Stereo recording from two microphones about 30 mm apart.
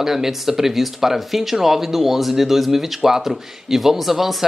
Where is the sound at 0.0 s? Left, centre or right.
Centre.